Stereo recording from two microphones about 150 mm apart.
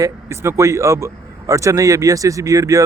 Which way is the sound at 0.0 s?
20° right (ahead or behind).